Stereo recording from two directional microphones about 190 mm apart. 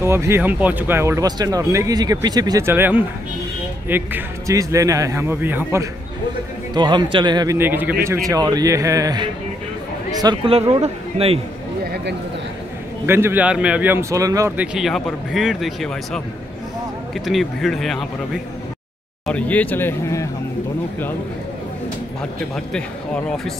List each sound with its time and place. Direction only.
0.0 s speech: 15° right (ahead or behind)
6.7 s speech: 25° right (ahead or behind)
11.9 s a sound: 65° right (ahead or behind)
13.0 s speech: 10° right (ahead or behind)
14.6 s speech: 5° right (ahead or behind)
19.2 s speech: 5° left (ahead or behind)
22.7 s speech: 5° left (ahead or behind)